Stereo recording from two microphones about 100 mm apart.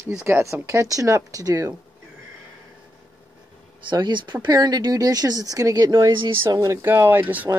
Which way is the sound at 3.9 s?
50° right (ahead or behind).